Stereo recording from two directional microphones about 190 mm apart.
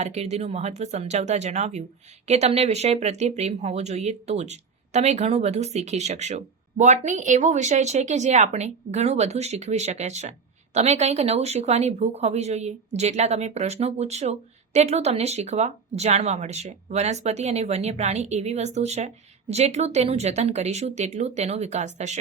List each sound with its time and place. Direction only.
0.0 s speech: 35° right (ahead or behind)